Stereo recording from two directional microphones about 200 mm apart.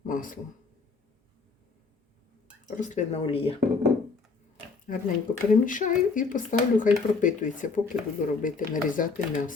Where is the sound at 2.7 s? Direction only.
40° left (ahead or behind).